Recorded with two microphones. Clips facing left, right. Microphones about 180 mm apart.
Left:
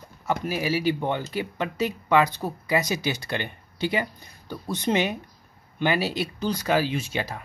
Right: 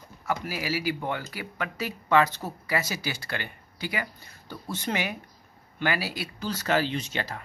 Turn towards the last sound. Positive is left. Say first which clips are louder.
# left 3 dB
turn(degrees=10)  # may be behind; listen again after turning